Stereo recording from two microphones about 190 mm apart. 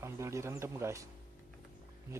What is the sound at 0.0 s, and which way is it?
Speech, 15° right (ahead or behind).